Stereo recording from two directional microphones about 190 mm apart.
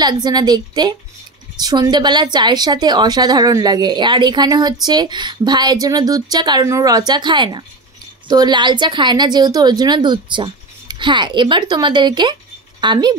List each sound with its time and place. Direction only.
0.0 s a woman's voice: 20° right (ahead or behind)